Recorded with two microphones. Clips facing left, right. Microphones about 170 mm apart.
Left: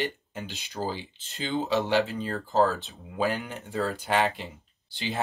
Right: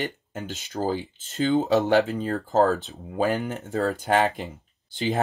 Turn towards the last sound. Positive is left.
turn(degrees=-45)  # may be behind; listen again after turning